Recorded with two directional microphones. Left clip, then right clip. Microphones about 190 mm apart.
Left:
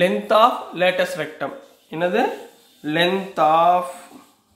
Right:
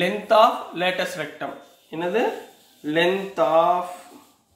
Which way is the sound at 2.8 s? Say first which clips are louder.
Left 1 dB; 40° left (ahead or behind).